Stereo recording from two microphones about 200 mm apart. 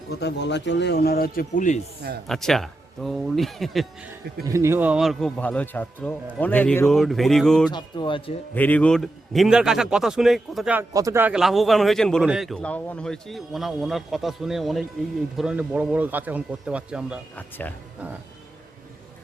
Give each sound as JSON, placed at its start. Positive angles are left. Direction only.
{"t": 0.1, "sound": "speech", "side_deg": 55}
{"t": 2.2, "sound": "a man's voice", "side_deg": 0}
{"t": 4.4, "sound": "a man's voice", "side_deg": -15}
{"t": 7.7, "sound": "speech", "side_deg": 25}
{"t": 8.5, "sound": "a man's voice", "side_deg": 10}
{"t": 17.3, "sound": "speech", "side_deg": 10}